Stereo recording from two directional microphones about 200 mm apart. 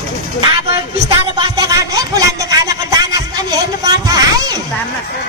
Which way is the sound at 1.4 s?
20° right (ahead or behind).